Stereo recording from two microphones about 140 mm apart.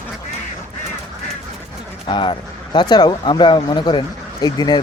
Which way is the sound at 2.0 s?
35° left (ahead or behind).